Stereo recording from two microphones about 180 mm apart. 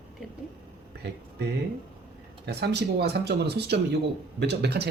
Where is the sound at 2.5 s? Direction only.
65° right (ahead or behind).